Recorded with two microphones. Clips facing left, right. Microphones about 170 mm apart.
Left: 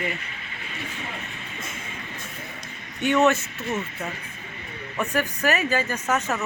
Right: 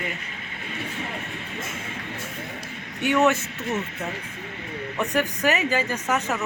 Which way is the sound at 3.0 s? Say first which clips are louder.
Left 1 dB; 10° right (ahead or behind).